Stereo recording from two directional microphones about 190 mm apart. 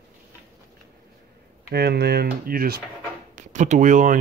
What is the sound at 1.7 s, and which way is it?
Speech, 55° right (ahead or behind).